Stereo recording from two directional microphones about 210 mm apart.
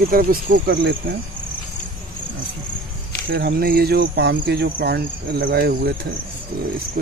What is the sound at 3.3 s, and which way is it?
Speech, 45° right (ahead or behind).